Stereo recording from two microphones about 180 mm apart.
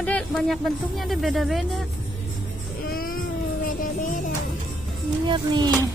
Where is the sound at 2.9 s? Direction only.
55° left (ahead or behind).